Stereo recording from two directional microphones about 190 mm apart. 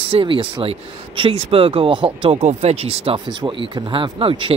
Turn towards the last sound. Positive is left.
turn(degrees=-30)  # may be behind; listen again after turning